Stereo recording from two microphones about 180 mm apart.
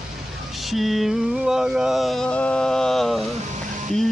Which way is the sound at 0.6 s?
Centre (ahead or behind).